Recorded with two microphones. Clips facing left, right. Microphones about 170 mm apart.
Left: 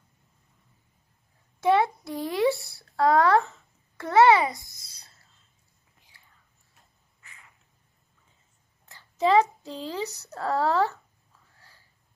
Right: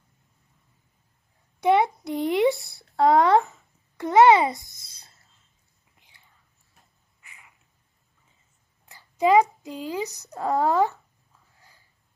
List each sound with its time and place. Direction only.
1.6 s speech: 15° right (ahead or behind)
7.2 s a sound: 15° right (ahead or behind)
8.8 s a child's voice: 15° right (ahead or behind)